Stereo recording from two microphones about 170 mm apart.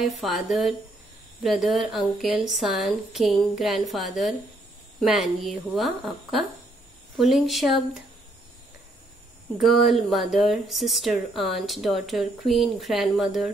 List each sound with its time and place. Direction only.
0.0 s speech: centre (ahead or behind)
9.6 s speech: centre (ahead or behind)